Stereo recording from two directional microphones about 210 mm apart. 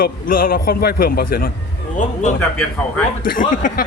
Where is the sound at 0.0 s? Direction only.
45° left (ahead or behind).